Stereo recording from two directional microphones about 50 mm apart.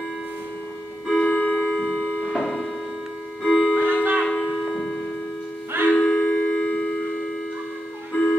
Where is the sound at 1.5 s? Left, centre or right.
Centre.